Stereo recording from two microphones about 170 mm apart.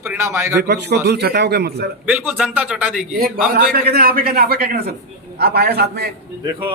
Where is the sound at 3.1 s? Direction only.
60° right (ahead or behind).